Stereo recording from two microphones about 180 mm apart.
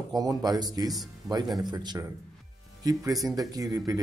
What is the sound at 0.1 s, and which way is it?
Speech, 20° right (ahead or behind).